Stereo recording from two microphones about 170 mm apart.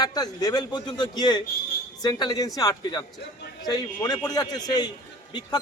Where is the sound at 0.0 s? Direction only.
25° left (ahead or behind).